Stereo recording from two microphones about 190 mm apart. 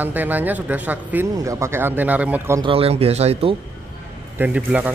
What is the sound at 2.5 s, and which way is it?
Speech, 30° right (ahead or behind).